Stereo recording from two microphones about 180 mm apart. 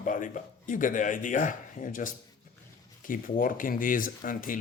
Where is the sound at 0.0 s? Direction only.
45° left (ahead or behind).